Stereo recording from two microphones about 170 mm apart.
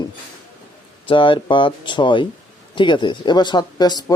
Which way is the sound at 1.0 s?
30° left (ahead or behind).